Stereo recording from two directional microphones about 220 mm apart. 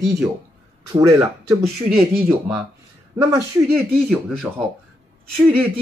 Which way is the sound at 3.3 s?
Centre (ahead or behind).